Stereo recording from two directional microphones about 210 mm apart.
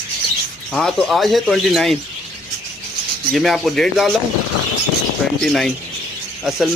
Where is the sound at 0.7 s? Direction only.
Centre (ahead or behind).